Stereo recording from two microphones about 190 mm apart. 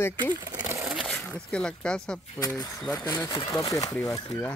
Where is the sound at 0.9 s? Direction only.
5° left (ahead or behind).